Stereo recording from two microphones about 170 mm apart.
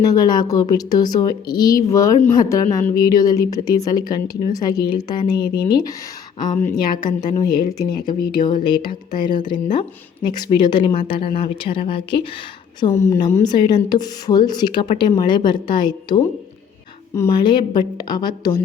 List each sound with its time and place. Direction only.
0.0 s a woman's voice: 20° left (ahead or behind)
13.0 s a woman's voice: 20° left (ahead or behind)